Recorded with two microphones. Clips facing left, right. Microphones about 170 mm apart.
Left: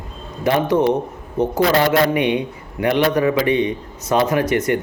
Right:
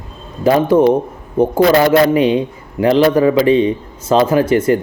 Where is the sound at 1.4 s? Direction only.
30° right (ahead or behind).